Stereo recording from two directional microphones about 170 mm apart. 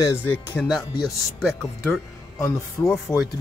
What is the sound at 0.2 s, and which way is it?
Speech, 10° left (ahead or behind).